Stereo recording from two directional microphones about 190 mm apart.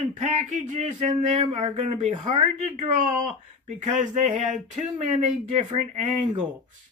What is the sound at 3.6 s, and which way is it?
Speech, 40° right (ahead or behind).